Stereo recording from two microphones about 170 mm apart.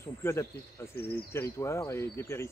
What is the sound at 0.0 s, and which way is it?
Speech, 15° left (ahead or behind).